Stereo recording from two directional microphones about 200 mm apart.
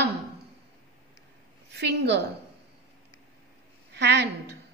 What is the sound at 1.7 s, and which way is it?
Speech, 55° right (ahead or behind).